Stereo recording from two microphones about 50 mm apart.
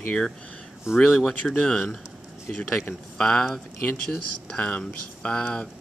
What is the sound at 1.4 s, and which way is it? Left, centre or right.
Speech, centre.